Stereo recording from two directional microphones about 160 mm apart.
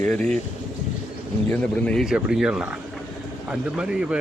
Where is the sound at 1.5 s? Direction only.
5° left (ahead or behind).